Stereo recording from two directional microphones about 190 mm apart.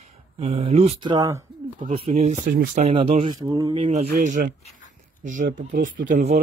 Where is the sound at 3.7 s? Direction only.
35° right (ahead or behind).